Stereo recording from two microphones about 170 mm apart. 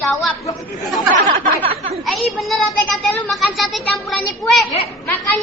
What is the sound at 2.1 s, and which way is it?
Speech, centre (ahead or behind).